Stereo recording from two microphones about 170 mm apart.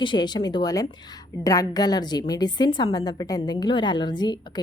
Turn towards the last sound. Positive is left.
turn(degrees=25)  # may be behind; listen again after turning